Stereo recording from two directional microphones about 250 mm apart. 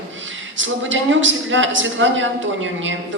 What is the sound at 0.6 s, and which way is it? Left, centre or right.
A man's voice, right.